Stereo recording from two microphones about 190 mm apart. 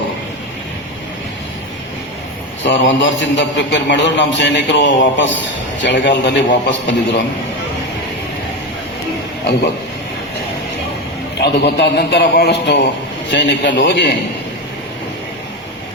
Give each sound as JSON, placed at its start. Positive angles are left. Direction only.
{"t": 2.6, "sound": "a man's voice", "side_deg": 70}
{"t": 11.3, "sound": "a man's voice", "side_deg": 60}